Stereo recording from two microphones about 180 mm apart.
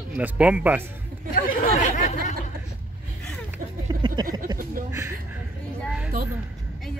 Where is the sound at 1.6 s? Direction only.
40° left (ahead or behind).